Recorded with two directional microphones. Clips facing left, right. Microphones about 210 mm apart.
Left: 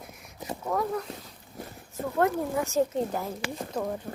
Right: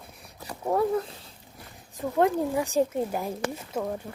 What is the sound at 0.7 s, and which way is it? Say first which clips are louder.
Speech: right 5 dB; 30° right (ahead or behind).